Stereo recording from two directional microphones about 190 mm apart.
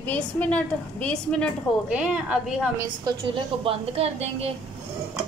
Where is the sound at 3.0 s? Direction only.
30° right (ahead or behind).